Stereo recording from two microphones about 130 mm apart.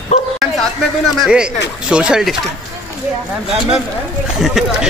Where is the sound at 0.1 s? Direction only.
55° left (ahead or behind).